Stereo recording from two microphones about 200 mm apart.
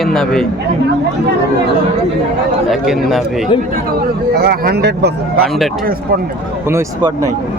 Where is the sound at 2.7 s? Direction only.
Centre (ahead or behind).